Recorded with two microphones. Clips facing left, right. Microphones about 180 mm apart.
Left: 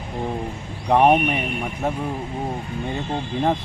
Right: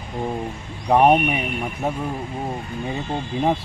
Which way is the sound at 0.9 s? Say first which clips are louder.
Right 1 dB; 5° right (ahead or behind).